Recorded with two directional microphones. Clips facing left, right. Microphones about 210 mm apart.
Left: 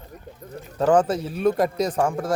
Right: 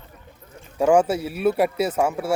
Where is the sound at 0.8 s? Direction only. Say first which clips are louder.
Right 1 dB; 10° right (ahead or behind).